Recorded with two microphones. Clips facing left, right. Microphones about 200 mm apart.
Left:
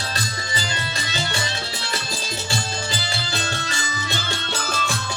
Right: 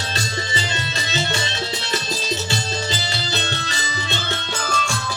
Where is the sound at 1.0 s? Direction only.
25° right (ahead or behind).